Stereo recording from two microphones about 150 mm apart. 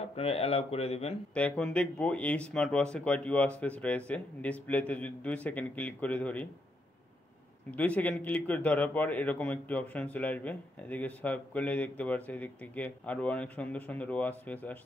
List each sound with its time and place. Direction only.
0.1 s speech: 40° left (ahead or behind)
1.3 s a man's voice: 10° left (ahead or behind)
7.7 s a man's voice: 10° left (ahead or behind)